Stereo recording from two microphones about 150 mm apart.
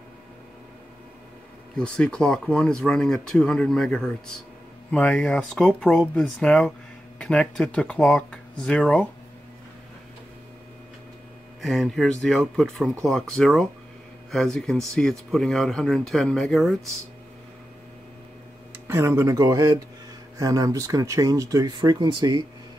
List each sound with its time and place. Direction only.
1.8 s speech: 5° left (ahead or behind)
11.6 s speech: centre (ahead or behind)
18.7 s speech: 15° right (ahead or behind)